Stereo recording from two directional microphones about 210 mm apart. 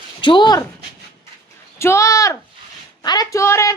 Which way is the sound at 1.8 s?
15° left (ahead or behind).